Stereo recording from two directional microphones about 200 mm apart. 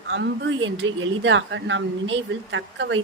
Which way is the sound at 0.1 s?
65° right (ahead or behind).